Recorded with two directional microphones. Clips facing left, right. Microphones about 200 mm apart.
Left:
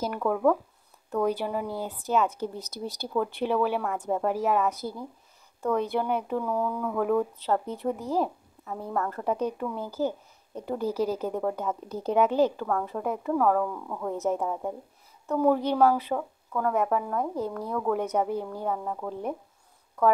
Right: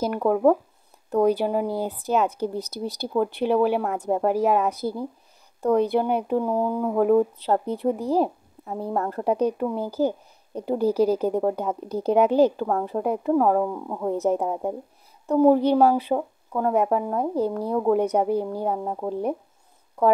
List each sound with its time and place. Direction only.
0.2 s speech: 35° right (ahead or behind)